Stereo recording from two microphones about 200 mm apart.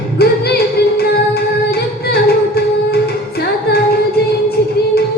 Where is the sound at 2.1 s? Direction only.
55° left (ahead or behind).